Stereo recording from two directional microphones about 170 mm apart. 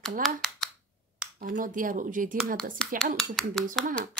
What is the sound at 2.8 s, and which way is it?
Speech, 5° left (ahead or behind).